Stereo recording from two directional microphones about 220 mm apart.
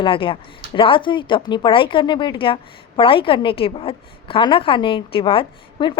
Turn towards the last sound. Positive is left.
turn(degrees=20)  # may be behind; listen again after turning